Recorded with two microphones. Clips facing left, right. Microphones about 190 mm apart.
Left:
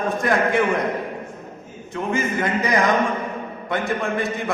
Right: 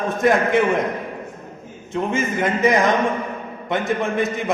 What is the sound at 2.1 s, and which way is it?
A man's voice, 20° right (ahead or behind).